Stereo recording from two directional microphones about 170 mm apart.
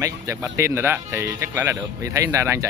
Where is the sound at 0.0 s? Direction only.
20° right (ahead or behind).